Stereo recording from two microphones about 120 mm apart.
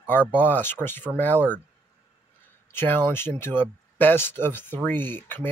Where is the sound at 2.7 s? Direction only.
20° left (ahead or behind).